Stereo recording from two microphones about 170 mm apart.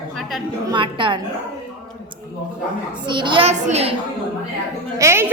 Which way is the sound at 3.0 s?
25° right (ahead or behind).